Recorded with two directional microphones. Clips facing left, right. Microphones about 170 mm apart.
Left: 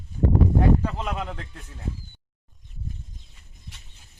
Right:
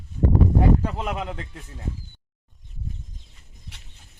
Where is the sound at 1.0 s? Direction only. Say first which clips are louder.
Right 2 dB; 10° right (ahead or behind).